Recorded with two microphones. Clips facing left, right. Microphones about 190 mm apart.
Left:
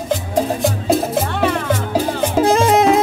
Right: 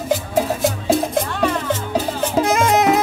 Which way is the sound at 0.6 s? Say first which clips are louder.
Left 1 dB; centre (ahead or behind).